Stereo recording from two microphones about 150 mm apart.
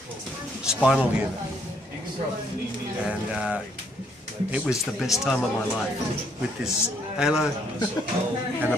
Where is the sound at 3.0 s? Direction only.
10° right (ahead or behind).